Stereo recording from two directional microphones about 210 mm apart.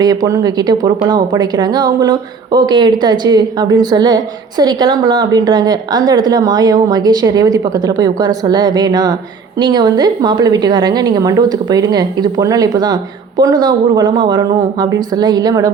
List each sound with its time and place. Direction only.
0.0 s a woman's voice: 20° right (ahead or behind)